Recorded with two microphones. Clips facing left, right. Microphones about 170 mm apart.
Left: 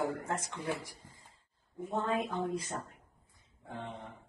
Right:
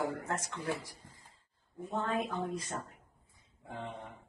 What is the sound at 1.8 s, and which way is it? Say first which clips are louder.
Speech: left 1 dB; 20° left (ahead or behind).